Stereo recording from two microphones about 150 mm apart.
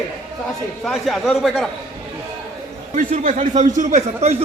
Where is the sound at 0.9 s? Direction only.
Centre (ahead or behind).